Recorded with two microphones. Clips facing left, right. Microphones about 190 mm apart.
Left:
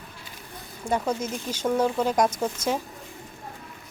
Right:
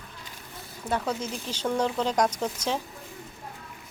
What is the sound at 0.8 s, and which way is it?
Speech, 10° left (ahead or behind).